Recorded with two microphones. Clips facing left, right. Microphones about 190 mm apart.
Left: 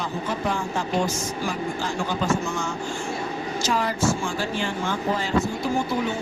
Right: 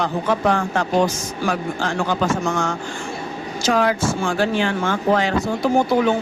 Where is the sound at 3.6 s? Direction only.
65° right (ahead or behind).